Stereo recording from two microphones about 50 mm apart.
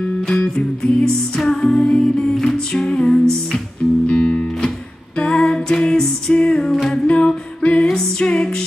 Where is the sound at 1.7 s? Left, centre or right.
Left.